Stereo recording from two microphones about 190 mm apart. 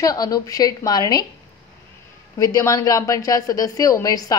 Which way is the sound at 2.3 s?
20° left (ahead or behind).